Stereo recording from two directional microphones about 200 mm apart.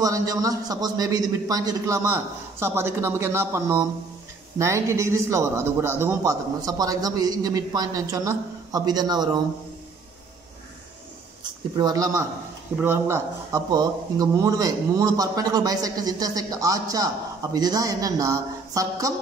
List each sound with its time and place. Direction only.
0.0 s a man's voice: 15° right (ahead or behind)
11.7 s a man's voice: 20° right (ahead or behind)